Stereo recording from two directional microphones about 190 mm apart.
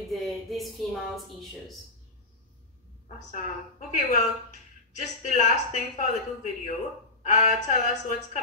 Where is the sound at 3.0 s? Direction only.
40° left (ahead or behind).